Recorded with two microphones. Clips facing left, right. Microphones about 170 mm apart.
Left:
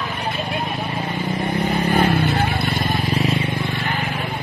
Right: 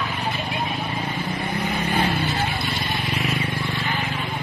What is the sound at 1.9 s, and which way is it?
Vehicle, 50° left (ahead or behind).